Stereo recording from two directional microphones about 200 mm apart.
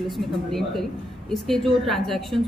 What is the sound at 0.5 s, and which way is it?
A woman's voice, centre (ahead or behind).